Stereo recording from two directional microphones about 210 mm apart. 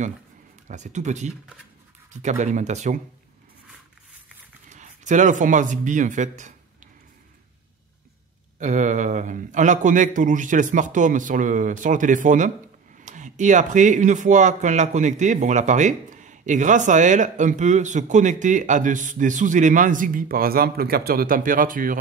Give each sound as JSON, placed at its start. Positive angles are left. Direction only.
{"t": 0.7, "sound": "speech", "side_deg": -35}
{"t": 4.6, "sound": "speech", "side_deg": -35}
{"t": 8.5, "sound": "speech", "side_deg": -35}